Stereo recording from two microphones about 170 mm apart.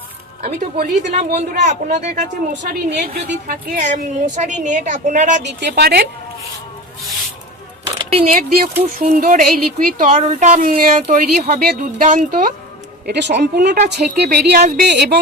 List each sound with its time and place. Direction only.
0.4 s a woman's voice: 45° right (ahead or behind)
2.6 s a woman's voice: 60° right (ahead or behind); by 5.4 s 45° right (ahead or behind)
5.4 s a woman's voice: 80° right
7.9 s a sound: 35° right (ahead or behind)
8.3 s a sound: 55° right (ahead or behind)
9.7 s a woman's voice: 50° right (ahead or behind)
13.1 s speech: 90° right
14.1 s a woman's voice: 65° right (ahead or behind)